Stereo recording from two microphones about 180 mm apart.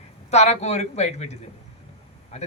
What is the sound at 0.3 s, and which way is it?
A man's voice, 40° left (ahead or behind).